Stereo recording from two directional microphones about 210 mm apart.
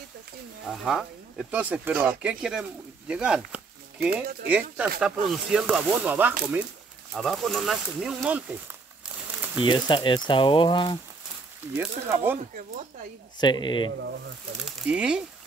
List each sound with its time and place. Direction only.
0.7 s speech: centre (ahead or behind)
9.6 s speech: 25° left (ahead or behind)
11.7 s speech: 10° right (ahead or behind)
13.4 s speech: 20° left (ahead or behind)
14.6 s speech: 5° right (ahead or behind)